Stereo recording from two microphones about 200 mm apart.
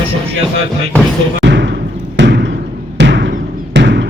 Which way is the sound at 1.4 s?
60° right (ahead or behind).